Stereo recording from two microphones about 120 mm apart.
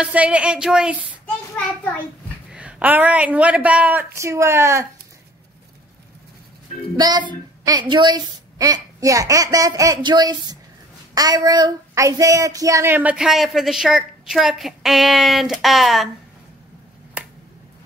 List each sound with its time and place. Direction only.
0.0 s speech: 10° right (ahead or behind)
2.5 s speech: 10° right (ahead or behind)
7.0 s a woman's voice: 35° right (ahead or behind)
12.9 s a woman's voice: 10° right (ahead or behind)